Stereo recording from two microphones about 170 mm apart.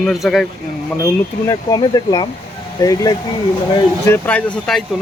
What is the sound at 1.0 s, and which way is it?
Speech, 20° left (ahead or behind).